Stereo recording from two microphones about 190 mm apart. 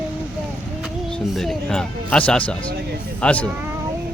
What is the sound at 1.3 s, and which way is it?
Speech, centre (ahead or behind).